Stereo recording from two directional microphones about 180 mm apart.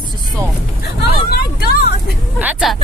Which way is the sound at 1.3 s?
60° left (ahead or behind).